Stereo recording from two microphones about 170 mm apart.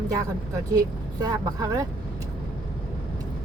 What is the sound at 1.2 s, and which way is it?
Speech, 20° right (ahead or behind).